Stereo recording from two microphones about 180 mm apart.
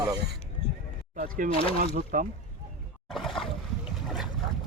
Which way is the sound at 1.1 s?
50° right (ahead or behind).